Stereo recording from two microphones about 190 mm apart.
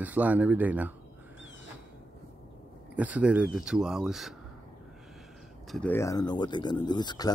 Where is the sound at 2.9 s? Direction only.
5° right (ahead or behind).